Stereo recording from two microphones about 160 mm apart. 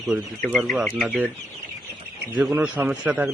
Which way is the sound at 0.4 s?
Centre (ahead or behind).